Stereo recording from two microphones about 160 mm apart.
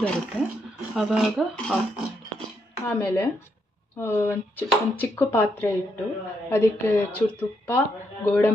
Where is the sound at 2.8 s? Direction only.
10° left (ahead or behind).